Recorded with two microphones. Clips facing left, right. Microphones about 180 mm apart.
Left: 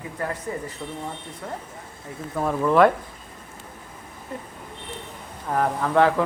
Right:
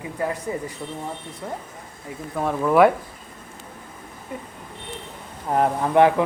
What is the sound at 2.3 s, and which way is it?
Speech, centre (ahead or behind).